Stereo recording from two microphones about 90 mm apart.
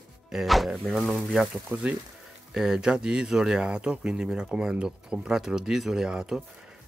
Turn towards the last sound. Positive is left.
turn(degrees=-10)  # may be behind; listen again after turning